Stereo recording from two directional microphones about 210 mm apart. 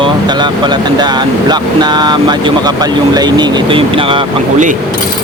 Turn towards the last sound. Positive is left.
turn(degrees=-25)  # may be behind; listen again after turning